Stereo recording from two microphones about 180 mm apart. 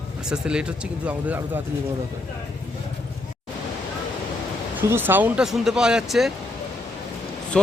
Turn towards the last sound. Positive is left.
turn(degrees=5)  # may be behind; listen again after turning